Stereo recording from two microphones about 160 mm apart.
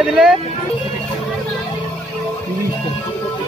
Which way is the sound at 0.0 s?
Centre (ahead or behind).